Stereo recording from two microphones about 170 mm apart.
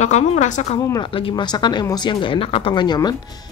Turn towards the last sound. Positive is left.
turn(degrees=25)  # may be behind; listen again after turning